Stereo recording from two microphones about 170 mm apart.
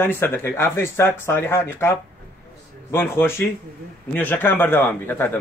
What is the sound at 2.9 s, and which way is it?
Speech, 15° left (ahead or behind).